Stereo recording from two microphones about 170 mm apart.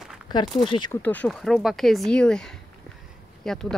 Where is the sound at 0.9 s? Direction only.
10° left (ahead or behind).